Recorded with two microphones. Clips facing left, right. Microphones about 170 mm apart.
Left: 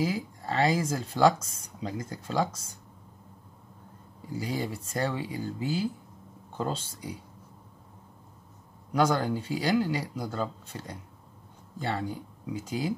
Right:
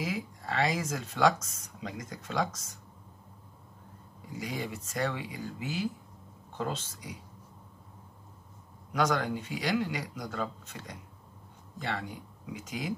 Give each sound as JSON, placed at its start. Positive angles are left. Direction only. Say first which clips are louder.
{"t": 0.0, "sound": "speech", "louder": "left 5 dB", "side_deg": 30}
{"t": 4.4, "sound": "speech", "louder": "left 4 dB", "side_deg": 35}
{"t": 8.9, "sound": "speech", "louder": "left 3 dB", "side_deg": 30}